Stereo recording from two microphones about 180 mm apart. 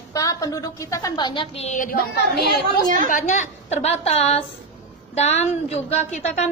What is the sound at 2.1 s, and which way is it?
Speech, 65° left (ahead or behind).